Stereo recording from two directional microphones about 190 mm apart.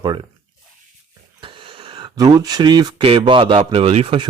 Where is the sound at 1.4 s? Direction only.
25° right (ahead or behind).